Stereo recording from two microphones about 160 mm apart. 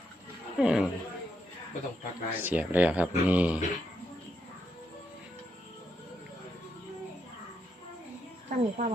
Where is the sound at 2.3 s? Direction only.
10° right (ahead or behind).